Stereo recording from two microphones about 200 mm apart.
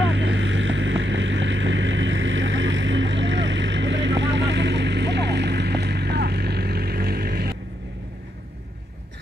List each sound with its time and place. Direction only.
0.0 s vehicle: 65° right (ahead or behind)